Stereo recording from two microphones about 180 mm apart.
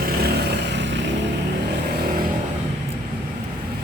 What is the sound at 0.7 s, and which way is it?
Vehicle, 75° right (ahead or behind).